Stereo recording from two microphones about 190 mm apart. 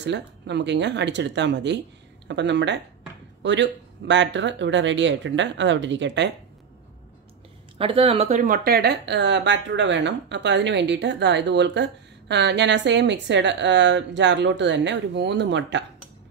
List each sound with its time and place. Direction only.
0.0 s speech: 65° right (ahead or behind)
7.7 s speech: 30° right (ahead or behind); by 15.8 s 70° right (ahead or behind)